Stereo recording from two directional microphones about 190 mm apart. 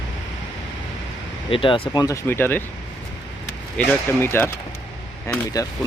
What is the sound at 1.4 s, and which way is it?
Speech, 25° left (ahead or behind).